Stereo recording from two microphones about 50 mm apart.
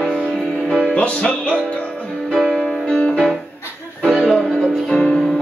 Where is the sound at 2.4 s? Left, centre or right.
Left.